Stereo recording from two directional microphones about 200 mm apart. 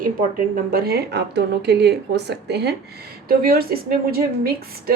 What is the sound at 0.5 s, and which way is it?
A woman's voice, 50° right (ahead or behind).